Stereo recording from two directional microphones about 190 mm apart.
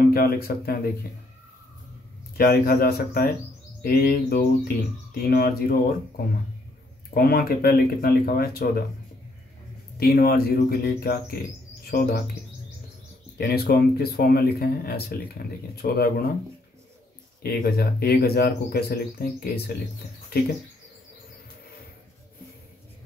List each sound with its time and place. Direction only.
0.1 s speech: 50° left (ahead or behind)
2.3 s speech: 50° left (ahead or behind)
9.9 s speech: 55° left (ahead or behind)
13.4 s speech: 55° left (ahead or behind)
17.4 s speech: 55° left (ahead or behind)